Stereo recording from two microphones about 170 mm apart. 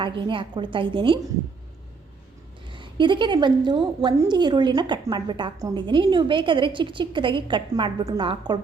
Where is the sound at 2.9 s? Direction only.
30° right (ahead or behind).